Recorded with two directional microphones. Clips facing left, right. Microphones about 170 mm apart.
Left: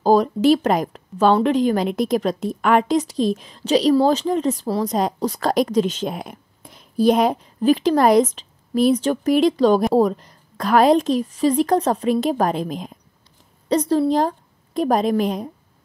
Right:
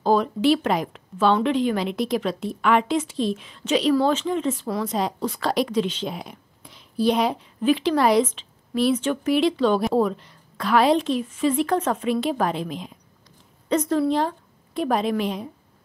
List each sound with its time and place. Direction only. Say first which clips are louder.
0.0 s speech: left 4 dB; 40° left (ahead or behind)
13.7 s a woman's voice: left 3 dB; 30° left (ahead or behind)